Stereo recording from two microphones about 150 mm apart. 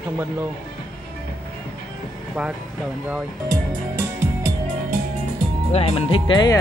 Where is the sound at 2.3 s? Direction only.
5° right (ahead or behind).